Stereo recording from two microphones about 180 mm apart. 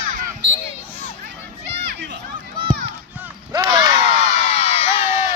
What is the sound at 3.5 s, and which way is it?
Battle cry, 25° right (ahead or behind).